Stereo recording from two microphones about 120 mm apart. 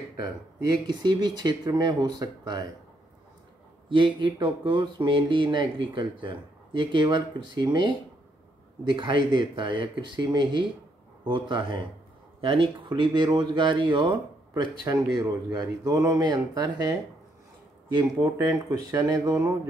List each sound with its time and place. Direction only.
0.8 s speech: 40° right (ahead or behind)
3.9 s speech: 40° right (ahead or behind)